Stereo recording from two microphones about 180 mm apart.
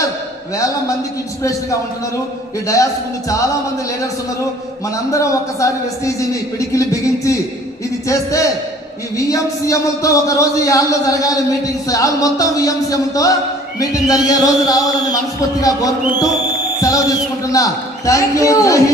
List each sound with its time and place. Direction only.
2.6 s speech: 20° left (ahead or behind)
5.1 s speech: 15° left (ahead or behind)
8.0 s speech: 15° left (ahead or behind)
13.7 s music: 20° left (ahead or behind)
16.8 s speech: 20° left (ahead or behind)